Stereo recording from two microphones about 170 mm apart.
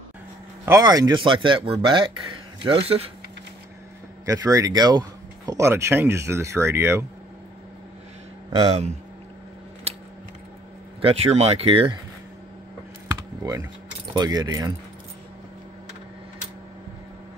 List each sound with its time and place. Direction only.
0.7 s speech: 20° right (ahead or behind); by 3.1 s 35° right (ahead or behind)
4.3 s speech: 20° right (ahead or behind)
9.9 s scissors: 35° right (ahead or behind)
11.0 s speech: 35° right (ahead or behind)
13.1 s computer keyboard: 20° right (ahead or behind)
14.1 s speech: 25° right (ahead or behind)